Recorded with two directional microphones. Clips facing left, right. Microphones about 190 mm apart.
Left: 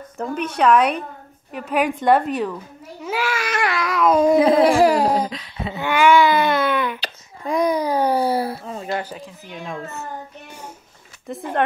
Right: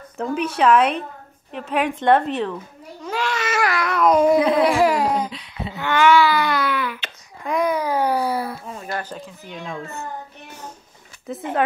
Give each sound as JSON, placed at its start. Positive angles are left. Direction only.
{"t": 0.2, "sound": "a child's voice", "side_deg": -5}
{"t": 1.5, "sound": "babbling", "side_deg": 5}
{"t": 4.4, "sound": "a sound", "side_deg": 30}
{"t": 5.3, "sound": "a sound", "side_deg": 90}
{"t": 5.8, "sound": "baby cry", "side_deg": 15}
{"t": 7.0, "sound": "babbling", "side_deg": 35}
{"t": 9.0, "sound": "a child's voice", "side_deg": 5}
{"t": 11.3, "sound": "a child's voice", "side_deg": 0}